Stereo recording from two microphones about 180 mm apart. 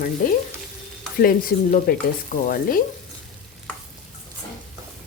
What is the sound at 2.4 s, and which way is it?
Frying, 50° left (ahead or behind).